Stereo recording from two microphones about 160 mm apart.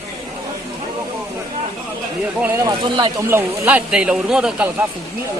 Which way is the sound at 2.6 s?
25° right (ahead or behind).